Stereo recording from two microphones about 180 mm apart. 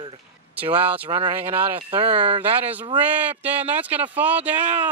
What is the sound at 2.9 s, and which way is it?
Speech, 10° right (ahead or behind).